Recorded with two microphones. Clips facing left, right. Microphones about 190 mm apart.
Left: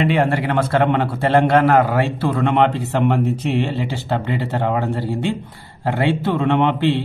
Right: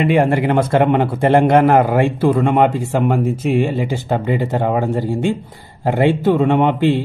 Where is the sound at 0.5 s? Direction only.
10° right (ahead or behind).